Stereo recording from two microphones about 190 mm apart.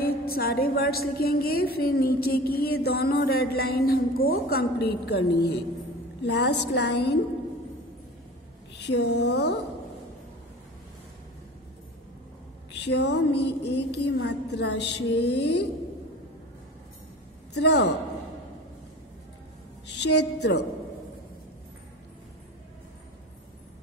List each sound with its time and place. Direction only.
0.0 s a woman's voice: 55° left (ahead or behind)
8.7 s a woman's voice: 65° left (ahead or behind)
12.8 s a woman's voice: 60° left (ahead or behind)
17.6 s a woman's voice: 65° left (ahead or behind)
20.0 s a woman's voice: 65° left (ahead or behind)